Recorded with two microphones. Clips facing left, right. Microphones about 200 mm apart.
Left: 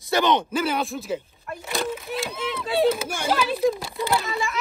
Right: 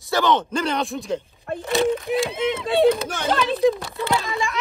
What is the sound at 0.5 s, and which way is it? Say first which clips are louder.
Speech: right 1 dB; 5° left (ahead or behind).